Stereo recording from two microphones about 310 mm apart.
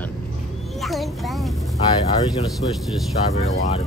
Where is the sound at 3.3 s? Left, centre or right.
Centre.